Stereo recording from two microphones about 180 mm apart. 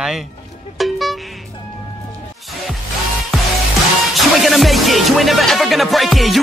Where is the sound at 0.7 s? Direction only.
Centre (ahead or behind).